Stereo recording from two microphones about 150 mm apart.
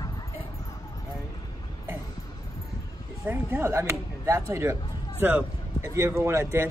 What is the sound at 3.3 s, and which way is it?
Speech, 15° right (ahead or behind).